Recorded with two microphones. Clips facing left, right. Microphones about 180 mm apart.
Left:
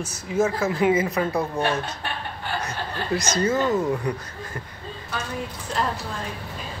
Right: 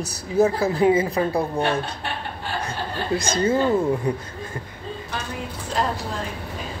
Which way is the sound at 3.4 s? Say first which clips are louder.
Right 3 dB; 30° right (ahead or behind).